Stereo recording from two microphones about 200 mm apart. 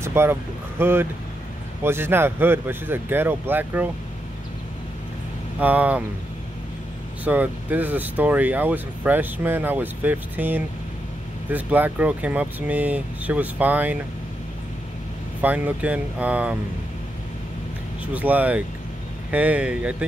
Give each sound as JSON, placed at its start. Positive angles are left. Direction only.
{"t": 0.0, "sound": "speech", "side_deg": -10}
{"t": 5.6, "sound": "speech", "side_deg": -10}
{"t": 7.2, "sound": "speech", "side_deg": -10}
{"t": 15.4, "sound": "speech", "side_deg": -10}
{"t": 18.0, "sound": "speech", "side_deg": -10}